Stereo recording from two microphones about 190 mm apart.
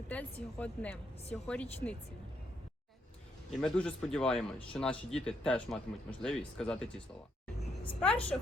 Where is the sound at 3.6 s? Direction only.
5° left (ahead or behind).